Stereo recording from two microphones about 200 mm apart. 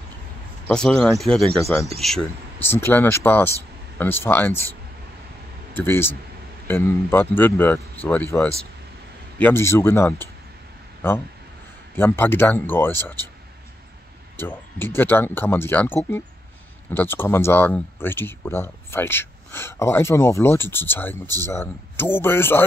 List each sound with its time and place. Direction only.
0.7 s speech: 5° left (ahead or behind)
5.8 s speech: 10° left (ahead or behind)
11.9 s speech: 10° left (ahead or behind)
14.5 s speech: 10° left (ahead or behind)